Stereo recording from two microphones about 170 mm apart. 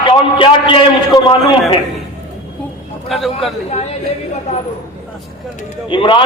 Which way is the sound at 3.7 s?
40° left (ahead or behind).